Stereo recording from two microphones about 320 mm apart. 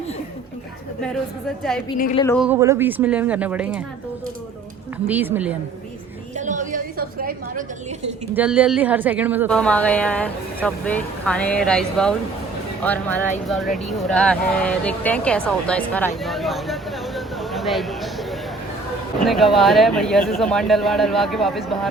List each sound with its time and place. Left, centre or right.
2.0 s speech: left
2.2 s a woman's voice: centre
5.0 s a woman's voice: centre
6.3 s a sound: right
8.3 s a woman's voice: centre
17.2 s a sound: centre
19.2 s a woman's voice: centre